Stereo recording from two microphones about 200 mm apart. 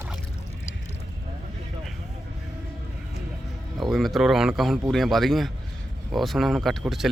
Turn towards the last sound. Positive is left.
turn(degrees=0)  # may be behind; listen again after turning